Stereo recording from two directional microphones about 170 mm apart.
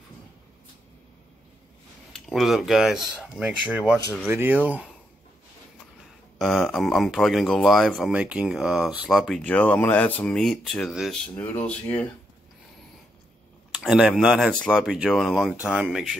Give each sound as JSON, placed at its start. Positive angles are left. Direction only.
{"t": 2.1, "sound": "speech", "side_deg": 0}
{"t": 6.3, "sound": "speech", "side_deg": 0}
{"t": 13.7, "sound": "speech", "side_deg": -5}